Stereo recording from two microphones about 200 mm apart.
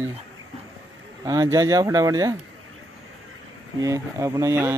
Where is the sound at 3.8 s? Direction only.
15° right (ahead or behind).